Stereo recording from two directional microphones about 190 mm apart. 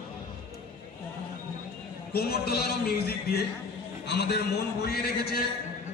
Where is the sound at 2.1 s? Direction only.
55° left (ahead or behind).